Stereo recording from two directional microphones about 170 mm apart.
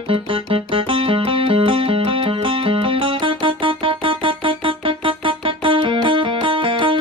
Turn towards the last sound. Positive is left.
turn(degrees=-30)  # may be behind; listen again after turning